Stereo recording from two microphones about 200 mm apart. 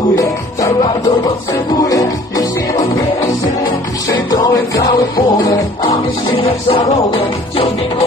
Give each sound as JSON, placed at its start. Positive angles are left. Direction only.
{"t": 0.1, "sound": "music", "side_deg": 15}
{"t": 4.1, "sound": "music", "side_deg": 20}